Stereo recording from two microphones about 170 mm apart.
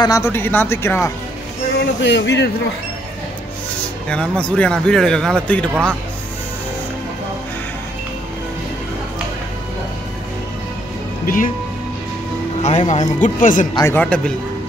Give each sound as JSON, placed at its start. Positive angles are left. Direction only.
{"t": 0.0, "sound": "speech", "side_deg": 20}
{"t": 1.8, "sound": "speech", "side_deg": 90}
{"t": 4.1, "sound": "a man's voice", "side_deg": 5}
{"t": 11.2, "sound": "speech", "side_deg": 55}
{"t": 12.6, "sound": "speech", "side_deg": 45}
{"t": 13.9, "sound": "speech", "side_deg": 5}